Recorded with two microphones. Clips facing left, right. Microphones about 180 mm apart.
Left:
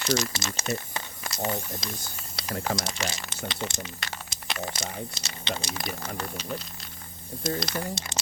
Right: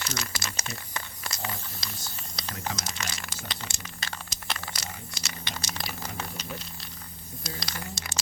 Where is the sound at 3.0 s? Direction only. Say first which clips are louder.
Left 5 dB; 25° left (ahead or behind).